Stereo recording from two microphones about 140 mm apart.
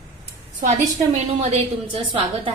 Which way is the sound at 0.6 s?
55° right (ahead or behind).